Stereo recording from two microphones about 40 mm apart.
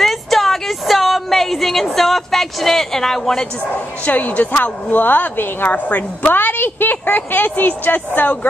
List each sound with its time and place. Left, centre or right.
0.0 s a sound: centre
4.0 s a woman's voice: left
4.9 s a woman's voice: left
5.7 s a woman's voice: left
6.3 s a woman's voice: left